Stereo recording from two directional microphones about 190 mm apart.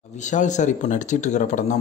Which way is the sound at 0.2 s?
40° left (ahead or behind).